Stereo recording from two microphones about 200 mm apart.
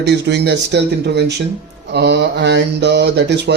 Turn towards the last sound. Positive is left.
turn(degrees=-60)  # may be behind; listen again after turning